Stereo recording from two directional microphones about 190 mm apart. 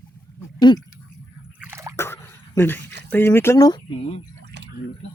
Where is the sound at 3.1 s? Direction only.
10° left (ahead or behind).